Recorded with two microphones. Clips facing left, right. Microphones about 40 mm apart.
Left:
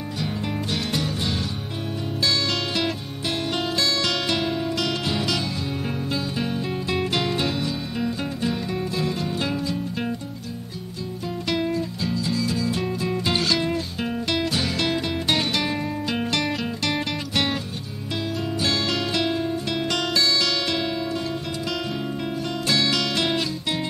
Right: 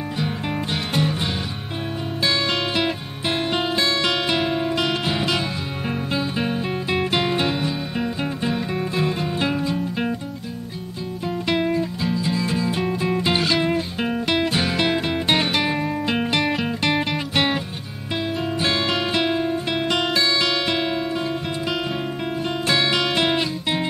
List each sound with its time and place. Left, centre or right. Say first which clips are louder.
0.2 s music: right 2 dB; right
11.4 s music: right 3 dB; right
18.6 s music: right 2 dB; right
22.7 s music: right 2 dB; right